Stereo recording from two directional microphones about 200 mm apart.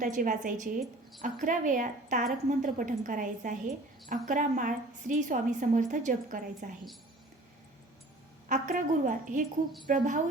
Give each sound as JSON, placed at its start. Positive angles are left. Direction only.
{"t": 0.0, "sound": "a woman's voice", "side_deg": -40}
{"t": 8.4, "sound": "a woman's voice", "side_deg": -40}